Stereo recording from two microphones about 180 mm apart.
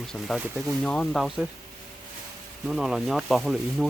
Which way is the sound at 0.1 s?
Centre (ahead or behind).